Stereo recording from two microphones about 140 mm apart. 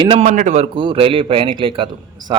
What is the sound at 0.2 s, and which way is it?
Speech, 65° right (ahead or behind).